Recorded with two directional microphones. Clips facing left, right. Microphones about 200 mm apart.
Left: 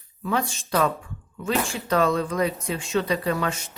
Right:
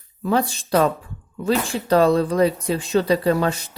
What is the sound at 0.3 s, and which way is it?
Speech, 35° right (ahead or behind).